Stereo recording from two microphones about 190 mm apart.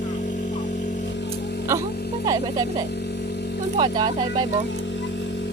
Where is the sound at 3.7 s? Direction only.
25° right (ahead or behind).